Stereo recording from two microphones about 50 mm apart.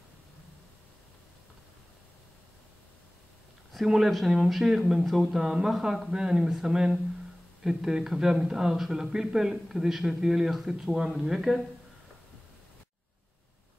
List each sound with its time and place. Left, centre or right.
3.8 s speech: centre